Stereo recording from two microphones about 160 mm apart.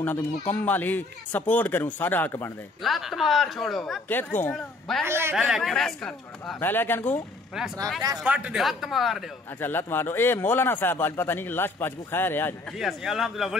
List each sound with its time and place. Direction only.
0.0 s speech: 10° left (ahead or behind)
2.8 s speech: centre (ahead or behind)
4.1 s speech: 10° left (ahead or behind)
5.0 s a man's voice: 15° right (ahead or behind)
5.3 s speech: centre (ahead or behind); by 7.2 s 15° left (ahead or behind)
8.2 s speech: 5° right (ahead or behind)
9.6 s speech: 10° left (ahead or behind)
12.7 s speech: centre (ahead or behind)